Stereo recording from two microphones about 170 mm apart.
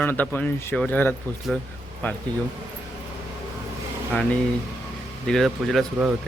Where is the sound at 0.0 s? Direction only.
10° left (ahead or behind).